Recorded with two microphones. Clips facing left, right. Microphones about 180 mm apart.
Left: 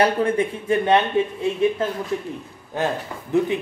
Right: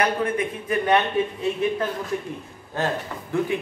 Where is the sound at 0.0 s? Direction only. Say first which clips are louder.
Left 4 dB; 30° left (ahead or behind).